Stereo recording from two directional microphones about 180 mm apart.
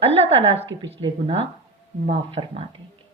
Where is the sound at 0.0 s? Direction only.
35° right (ahead or behind).